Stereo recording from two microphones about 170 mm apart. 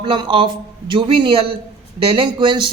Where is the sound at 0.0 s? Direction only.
25° right (ahead or behind).